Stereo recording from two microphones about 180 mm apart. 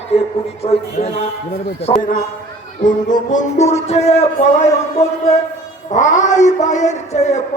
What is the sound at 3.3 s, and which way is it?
A man's voice, 45° left (ahead or behind).